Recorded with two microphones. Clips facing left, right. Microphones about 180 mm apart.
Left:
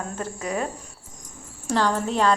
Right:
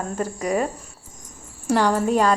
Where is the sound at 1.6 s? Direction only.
10° right (ahead or behind).